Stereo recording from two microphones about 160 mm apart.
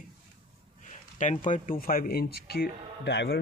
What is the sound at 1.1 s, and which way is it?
Speech, 50° left (ahead or behind).